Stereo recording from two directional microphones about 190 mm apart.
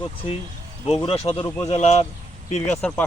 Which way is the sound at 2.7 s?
10° left (ahead or behind).